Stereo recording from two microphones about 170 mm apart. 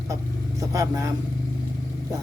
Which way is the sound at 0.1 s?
20° right (ahead or behind).